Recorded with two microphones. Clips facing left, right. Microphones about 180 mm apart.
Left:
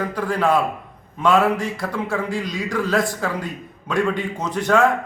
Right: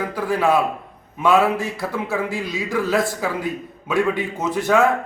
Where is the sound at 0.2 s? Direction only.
5° right (ahead or behind).